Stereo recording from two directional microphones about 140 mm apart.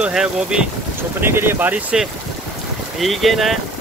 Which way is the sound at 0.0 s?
5° right (ahead or behind).